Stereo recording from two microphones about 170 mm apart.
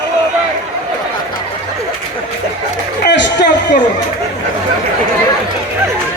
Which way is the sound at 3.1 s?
90° left.